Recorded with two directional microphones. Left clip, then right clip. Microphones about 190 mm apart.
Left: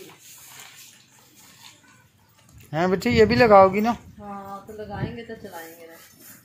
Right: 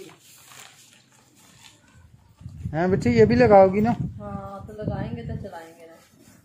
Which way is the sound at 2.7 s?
15° right (ahead or behind).